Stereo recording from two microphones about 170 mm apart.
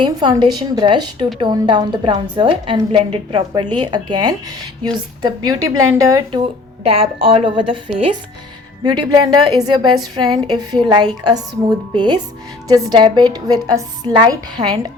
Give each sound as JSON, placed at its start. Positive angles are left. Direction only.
{"t": 0.0, "sound": "a woman's voice", "side_deg": -25}
{"t": 6.8, "sound": "a woman's voice", "side_deg": -35}